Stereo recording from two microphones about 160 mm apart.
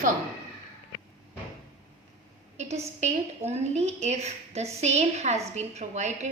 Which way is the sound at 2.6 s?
45° right (ahead or behind).